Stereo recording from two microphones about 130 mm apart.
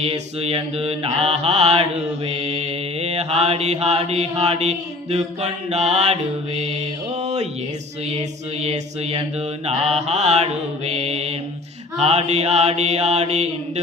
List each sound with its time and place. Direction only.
0.0 s mantra: 50° right (ahead or behind)